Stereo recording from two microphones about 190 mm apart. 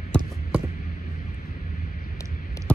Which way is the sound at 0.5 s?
10° right (ahead or behind).